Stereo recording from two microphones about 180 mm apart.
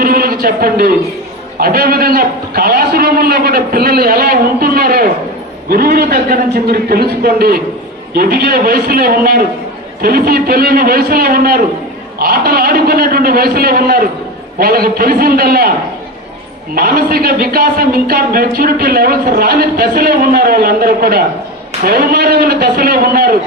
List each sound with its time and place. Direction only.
0.0 s a sound: 55° right (ahead or behind)
1.5 s speech: 55° right (ahead or behind)
16.7 s speech: 55° right (ahead or behind)